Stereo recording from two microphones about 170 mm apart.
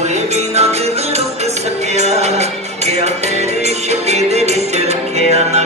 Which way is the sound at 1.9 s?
40° right (ahead or behind).